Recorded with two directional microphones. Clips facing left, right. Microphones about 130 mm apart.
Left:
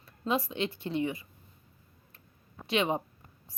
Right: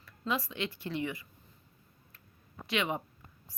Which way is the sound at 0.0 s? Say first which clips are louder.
Left 4 dB; 25° left (ahead or behind).